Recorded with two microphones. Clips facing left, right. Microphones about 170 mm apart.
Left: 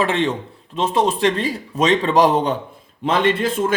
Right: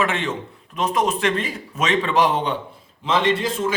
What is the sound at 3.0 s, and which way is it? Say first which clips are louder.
Speech: left 2 dB; 55° left (ahead or behind).